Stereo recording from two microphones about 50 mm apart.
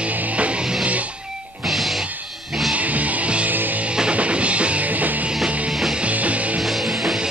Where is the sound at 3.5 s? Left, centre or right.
Right.